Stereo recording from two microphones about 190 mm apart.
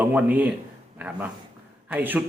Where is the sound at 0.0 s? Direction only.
10° right (ahead or behind).